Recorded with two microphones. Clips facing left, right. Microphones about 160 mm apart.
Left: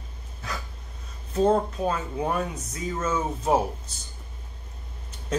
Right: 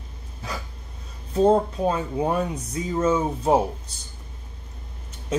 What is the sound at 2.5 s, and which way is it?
Speech, 30° right (ahead or behind).